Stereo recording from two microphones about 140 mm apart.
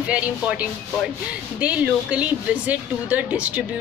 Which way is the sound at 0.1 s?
10° right (ahead or behind).